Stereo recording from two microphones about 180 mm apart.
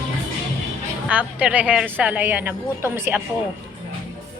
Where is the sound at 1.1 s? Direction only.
10° right (ahead or behind).